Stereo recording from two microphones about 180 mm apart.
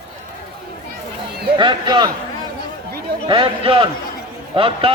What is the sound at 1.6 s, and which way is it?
Speech, 25° right (ahead or behind).